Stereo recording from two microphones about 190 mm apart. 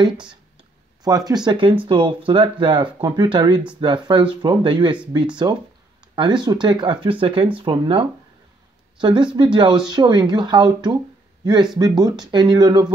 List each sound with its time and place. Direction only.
1.0 s speech: 20° right (ahead or behind)
12.0 s speech: 20° right (ahead or behind)